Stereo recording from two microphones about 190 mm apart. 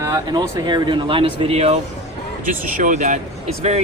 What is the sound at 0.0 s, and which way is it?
Speech, 20° right (ahead or behind).